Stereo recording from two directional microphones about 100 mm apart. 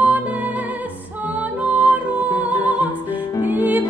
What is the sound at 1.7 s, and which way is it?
Music, 15° right (ahead or behind).